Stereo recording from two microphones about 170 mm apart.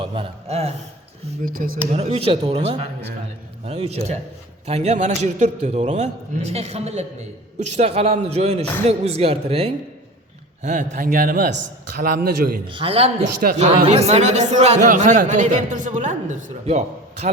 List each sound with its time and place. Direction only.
0.0 s a man's voice: 35° right (ahead or behind)
1.4 s a man's voice: 55° right (ahead or behind)
1.9 s a man's voice: 40° right (ahead or behind)
11.5 s a man's voice: 60° right (ahead or behind)
12.7 s a man's voice: 35° right (ahead or behind)